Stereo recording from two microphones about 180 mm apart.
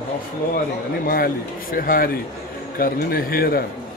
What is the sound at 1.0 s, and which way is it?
Speech, 55° left (ahead or behind).